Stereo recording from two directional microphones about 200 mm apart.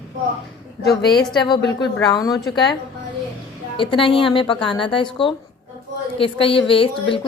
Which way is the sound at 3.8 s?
25° left (ahead or behind).